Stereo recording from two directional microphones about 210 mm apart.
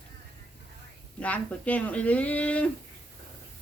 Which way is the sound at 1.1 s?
5° left (ahead or behind).